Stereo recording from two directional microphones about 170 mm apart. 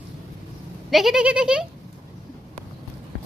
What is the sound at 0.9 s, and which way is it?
Speech, centre (ahead or behind).